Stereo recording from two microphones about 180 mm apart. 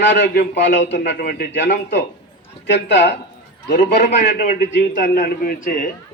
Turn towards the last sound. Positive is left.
turn(degrees=50)  # may be behind; listen again after turning